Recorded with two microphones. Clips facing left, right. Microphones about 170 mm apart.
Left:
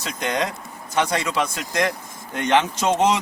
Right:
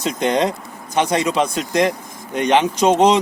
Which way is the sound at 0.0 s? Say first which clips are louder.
Right 7 dB; 20° right (ahead or behind).